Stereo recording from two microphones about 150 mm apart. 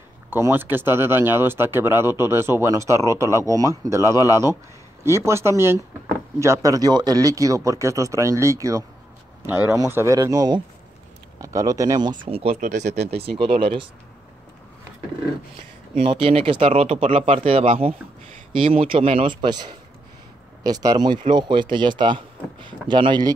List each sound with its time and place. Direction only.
0.3 s speech: 15° right (ahead or behind)
12.3 s speech: 40° right (ahead or behind)
12.5 s speech: 60° right (ahead or behind)
13.1 s speech: 40° right (ahead or behind)
16.2 s speech: 35° right (ahead or behind)
20.6 s speech: 25° right (ahead or behind)